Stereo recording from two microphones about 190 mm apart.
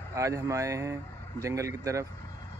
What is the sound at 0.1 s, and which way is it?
Speech, 15° right (ahead or behind).